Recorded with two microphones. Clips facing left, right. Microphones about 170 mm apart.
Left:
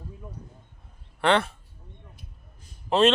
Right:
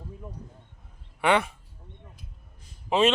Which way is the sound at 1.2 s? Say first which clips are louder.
Left 1 dB; 10° right (ahead or behind).